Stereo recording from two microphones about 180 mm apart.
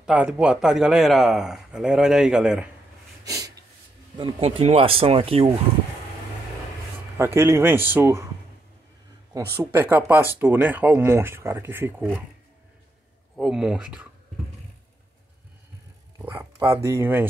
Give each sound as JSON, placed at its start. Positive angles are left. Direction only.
{"t": 0.0, "sound": "speech", "side_deg": -5}
{"t": 3.3, "sound": "snort", "side_deg": -20}
{"t": 4.2, "sound": "speech", "side_deg": -35}
{"t": 7.3, "sound": "speech", "side_deg": -15}
{"t": 9.6, "sound": "speech", "side_deg": -10}
{"t": 13.4, "sound": "speech", "side_deg": -5}
{"t": 16.2, "sound": "speech", "side_deg": -15}